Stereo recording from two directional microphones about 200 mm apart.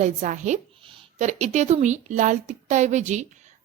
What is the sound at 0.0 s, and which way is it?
A woman's voice, 35° right (ahead or behind).